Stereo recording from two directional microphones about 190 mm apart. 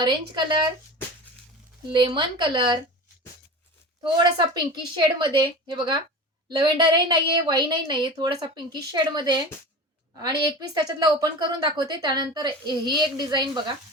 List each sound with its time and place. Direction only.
0.0 s a woman's voice: 25° right (ahead or behind)
1.9 s a woman's voice: 25° right (ahead or behind)
4.0 s a woman's voice: 25° right (ahead or behind)